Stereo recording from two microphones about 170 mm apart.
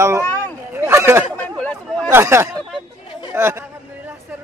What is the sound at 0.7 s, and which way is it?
Chatter, 15° right (ahead or behind).